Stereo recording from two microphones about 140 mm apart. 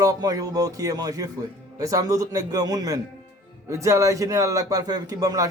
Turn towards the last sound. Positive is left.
turn(degrees=-25)  # may be behind; listen again after turning